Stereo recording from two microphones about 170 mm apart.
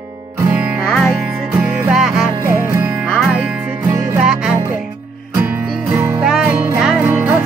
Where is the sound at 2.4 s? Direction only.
15° right (ahead or behind).